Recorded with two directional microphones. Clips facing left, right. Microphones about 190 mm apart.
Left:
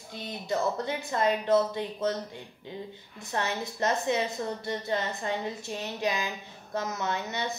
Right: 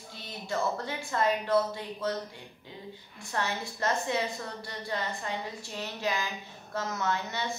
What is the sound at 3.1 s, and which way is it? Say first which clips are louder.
Speech: left 2 dB; 20° left (ahead or behind).